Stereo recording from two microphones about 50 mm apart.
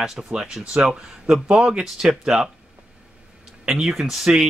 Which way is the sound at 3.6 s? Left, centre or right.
Centre.